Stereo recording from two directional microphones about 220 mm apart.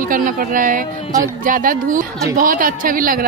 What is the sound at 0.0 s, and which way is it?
Speech, 40° right (ahead or behind).